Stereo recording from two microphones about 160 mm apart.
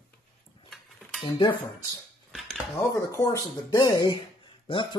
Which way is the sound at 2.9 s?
20° left (ahead or behind).